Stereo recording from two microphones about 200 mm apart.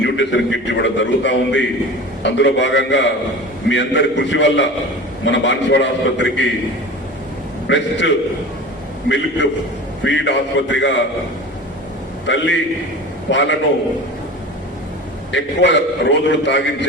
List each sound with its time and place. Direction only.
0.0 s a man's voice: 65° left (ahead or behind)
7.7 s a man's voice: 65° left (ahead or behind)
12.2 s a man's voice: 65° left (ahead or behind)
15.3 s a man's voice: 65° left (ahead or behind)